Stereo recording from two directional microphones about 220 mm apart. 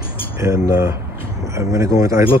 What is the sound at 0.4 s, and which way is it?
Speech, 15° right (ahead or behind).